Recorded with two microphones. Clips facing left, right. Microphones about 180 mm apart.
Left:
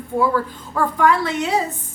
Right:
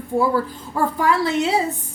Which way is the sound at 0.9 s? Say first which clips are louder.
Left 2 dB; 30° right (ahead or behind).